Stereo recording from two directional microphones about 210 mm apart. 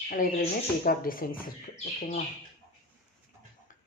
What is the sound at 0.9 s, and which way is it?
Speech, 45° left (ahead or behind).